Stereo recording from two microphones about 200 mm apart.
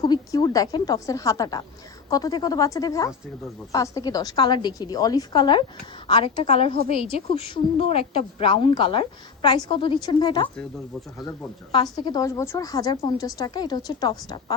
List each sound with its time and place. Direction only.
0.0 s a woman's voice: 20° left (ahead or behind)
11.7 s a woman's voice: 20° left (ahead or behind)